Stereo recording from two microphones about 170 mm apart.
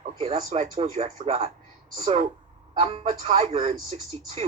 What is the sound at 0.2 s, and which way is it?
Speech, 40° right (ahead or behind).